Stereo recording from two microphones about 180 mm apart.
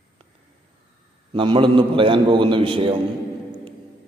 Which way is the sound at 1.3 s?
30° right (ahead or behind).